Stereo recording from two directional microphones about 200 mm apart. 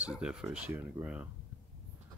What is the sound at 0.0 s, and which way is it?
Speech, 5° right (ahead or behind).